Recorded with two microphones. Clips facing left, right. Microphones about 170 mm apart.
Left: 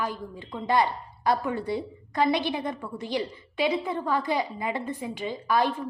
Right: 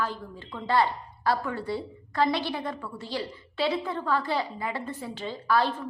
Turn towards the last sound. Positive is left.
turn(degrees=15)  # may be behind; listen again after turning